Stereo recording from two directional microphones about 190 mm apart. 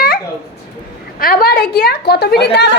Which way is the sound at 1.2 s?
50° left (ahead or behind).